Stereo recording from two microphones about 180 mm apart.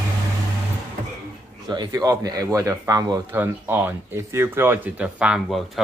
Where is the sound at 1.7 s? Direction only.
20° right (ahead or behind).